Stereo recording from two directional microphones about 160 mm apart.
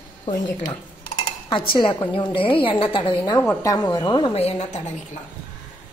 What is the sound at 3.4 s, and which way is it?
A woman's voice, 20° left (ahead or behind).